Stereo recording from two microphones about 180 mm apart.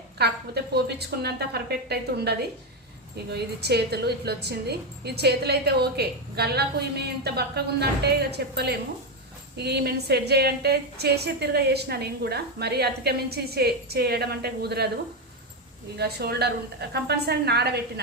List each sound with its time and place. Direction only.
0.2 s a woman's voice: 65° right (ahead or behind)
16.0 s a woman's voice: 60° right (ahead or behind)